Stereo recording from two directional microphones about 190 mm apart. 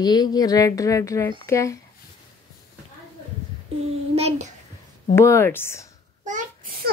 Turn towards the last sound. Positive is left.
turn(degrees=-45)  # may be behind; listen again after turning